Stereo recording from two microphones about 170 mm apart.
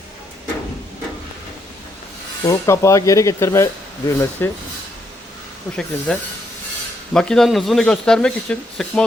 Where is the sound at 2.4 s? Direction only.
20° left (ahead or behind).